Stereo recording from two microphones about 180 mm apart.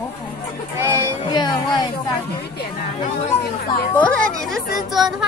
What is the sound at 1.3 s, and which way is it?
Speech, 25° left (ahead or behind).